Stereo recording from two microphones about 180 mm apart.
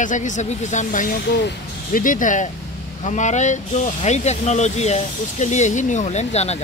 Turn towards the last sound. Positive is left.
turn(degrees=35)  # may be behind; listen again after turning